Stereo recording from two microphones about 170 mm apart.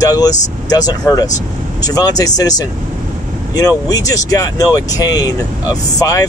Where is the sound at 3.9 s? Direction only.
20° left (ahead or behind).